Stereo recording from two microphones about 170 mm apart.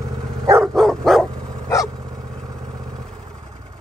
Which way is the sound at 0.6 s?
Centre (ahead or behind).